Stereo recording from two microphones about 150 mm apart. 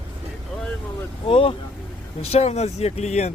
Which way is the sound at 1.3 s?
35° left (ahead or behind).